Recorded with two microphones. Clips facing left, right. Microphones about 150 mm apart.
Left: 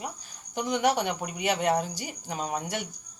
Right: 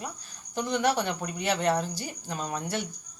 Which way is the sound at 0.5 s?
15° left (ahead or behind).